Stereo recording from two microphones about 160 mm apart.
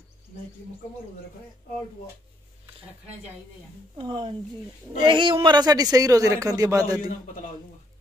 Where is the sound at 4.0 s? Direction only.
30° right (ahead or behind).